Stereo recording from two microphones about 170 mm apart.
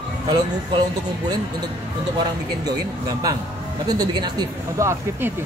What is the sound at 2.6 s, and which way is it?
Speech, 20° right (ahead or behind).